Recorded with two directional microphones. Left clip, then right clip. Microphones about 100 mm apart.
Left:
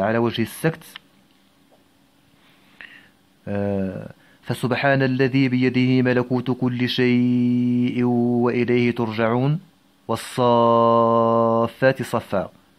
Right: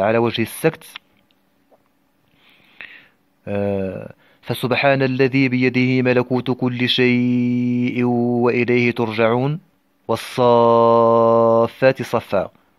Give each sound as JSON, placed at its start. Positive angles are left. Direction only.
{"t": 0.0, "sound": "speech", "side_deg": -35}
{"t": 2.8, "sound": "speech", "side_deg": -35}